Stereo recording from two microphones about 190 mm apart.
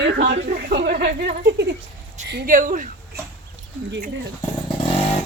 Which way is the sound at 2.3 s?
45° right (ahead or behind).